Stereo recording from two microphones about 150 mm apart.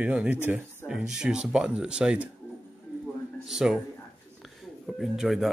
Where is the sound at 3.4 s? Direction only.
5° right (ahead or behind).